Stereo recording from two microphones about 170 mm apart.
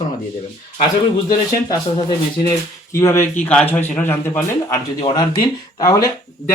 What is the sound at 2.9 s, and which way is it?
Speech, 15° left (ahead or behind).